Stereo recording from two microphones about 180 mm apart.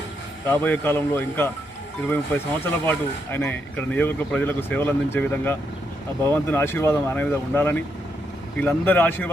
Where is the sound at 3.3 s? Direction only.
10° left (ahead or behind).